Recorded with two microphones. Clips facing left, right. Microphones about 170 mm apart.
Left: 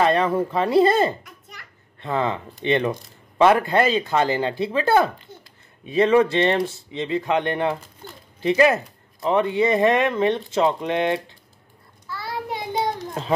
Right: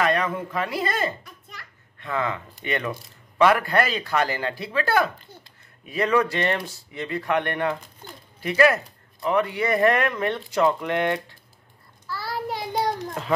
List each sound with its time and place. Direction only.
0.0 s speech: 30° left (ahead or behind)
12.2 s child singing: 20° left (ahead or behind)